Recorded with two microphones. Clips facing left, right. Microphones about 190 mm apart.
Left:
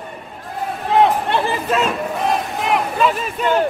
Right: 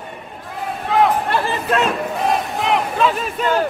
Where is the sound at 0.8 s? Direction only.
20° left (ahead or behind).